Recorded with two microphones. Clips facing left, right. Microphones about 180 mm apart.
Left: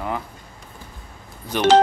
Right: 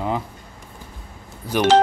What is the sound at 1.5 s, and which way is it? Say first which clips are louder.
Speech: right 2 dB; 10° right (ahead or behind).